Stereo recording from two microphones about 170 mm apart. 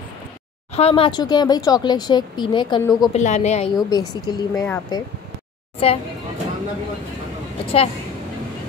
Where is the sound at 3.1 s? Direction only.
40° left (ahead or behind).